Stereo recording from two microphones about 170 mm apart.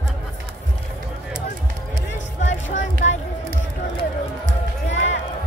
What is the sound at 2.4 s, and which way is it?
Music, 45° left (ahead or behind).